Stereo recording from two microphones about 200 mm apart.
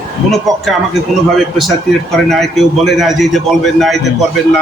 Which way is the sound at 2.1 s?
Centre (ahead or behind).